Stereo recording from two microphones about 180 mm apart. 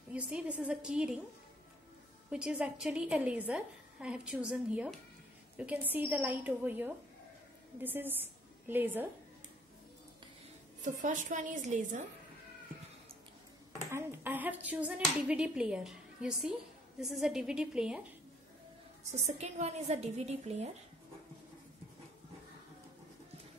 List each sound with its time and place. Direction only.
0.1 s a woman's voice: 5° right (ahead or behind)
2.3 s a woman's voice: 5° right (ahead or behind)
10.8 s a woman's voice: 45° right (ahead or behind)
13.8 s a woman's voice: 15° right (ahead or behind)
19.2 s a woman's voice: 40° right (ahead or behind)